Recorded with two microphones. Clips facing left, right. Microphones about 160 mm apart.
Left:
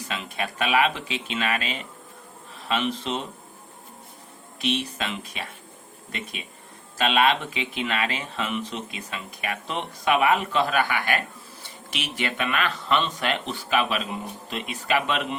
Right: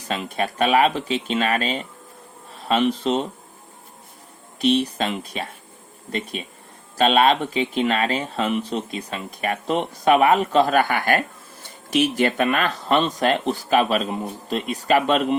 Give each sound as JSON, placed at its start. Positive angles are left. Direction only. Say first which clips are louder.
{"t": 0.1, "sound": "speech", "louder": "right 7 dB", "side_deg": -40}
{"t": 4.6, "sound": "speech", "louder": "right 8 dB", "side_deg": -35}